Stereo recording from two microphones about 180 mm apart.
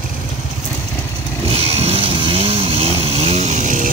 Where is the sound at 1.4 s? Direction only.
35° right (ahead or behind).